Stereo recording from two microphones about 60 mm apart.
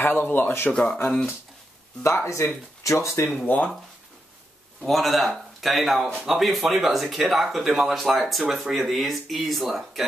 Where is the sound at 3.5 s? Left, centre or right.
Left.